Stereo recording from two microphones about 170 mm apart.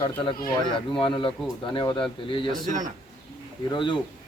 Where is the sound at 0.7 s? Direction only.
30° left (ahead or behind).